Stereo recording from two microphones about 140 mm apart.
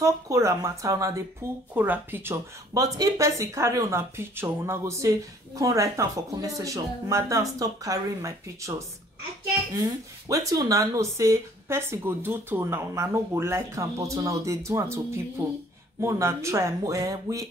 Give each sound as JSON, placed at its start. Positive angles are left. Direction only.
{"t": 0.0, "sound": "speech", "side_deg": -20}
{"t": 10.2, "sound": "speech", "side_deg": -25}